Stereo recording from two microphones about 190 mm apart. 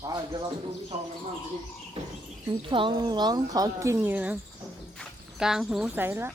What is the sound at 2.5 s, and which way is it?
Speech, 25° right (ahead or behind).